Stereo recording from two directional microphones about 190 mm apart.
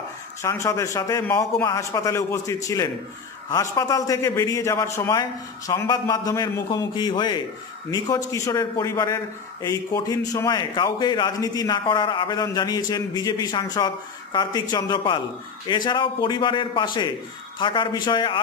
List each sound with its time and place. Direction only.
0.4 s a man's voice: 15° left (ahead or behind)